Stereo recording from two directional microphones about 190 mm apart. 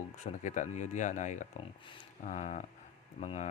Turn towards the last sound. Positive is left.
turn(degrees=35)  # may be behind; listen again after turning